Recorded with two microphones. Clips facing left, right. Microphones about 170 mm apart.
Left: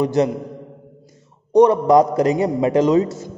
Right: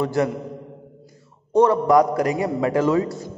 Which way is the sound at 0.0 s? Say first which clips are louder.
Left 4 dB; 20° left (ahead or behind).